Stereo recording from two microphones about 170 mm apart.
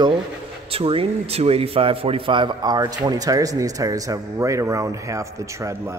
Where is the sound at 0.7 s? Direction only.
35° right (ahead or behind).